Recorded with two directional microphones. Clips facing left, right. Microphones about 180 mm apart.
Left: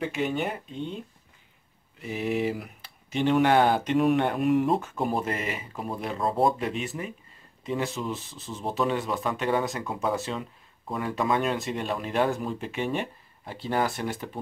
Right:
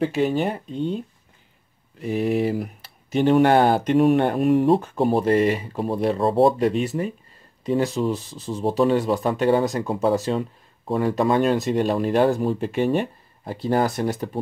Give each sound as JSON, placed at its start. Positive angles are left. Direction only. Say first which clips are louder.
{"t": 0.0, "sound": "speech", "louder": "right 7 dB", "side_deg": -35}
{"t": 2.0, "sound": "speech", "louder": "right 6 dB", "side_deg": -40}